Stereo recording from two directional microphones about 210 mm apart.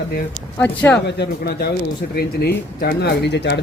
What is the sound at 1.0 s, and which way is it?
Speech, 50° left (ahead or behind).